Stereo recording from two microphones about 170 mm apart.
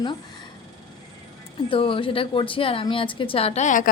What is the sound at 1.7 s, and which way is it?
A woman's voice, 30° left (ahead or behind).